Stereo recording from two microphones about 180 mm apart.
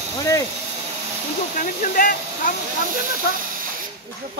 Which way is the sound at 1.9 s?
50° left (ahead or behind).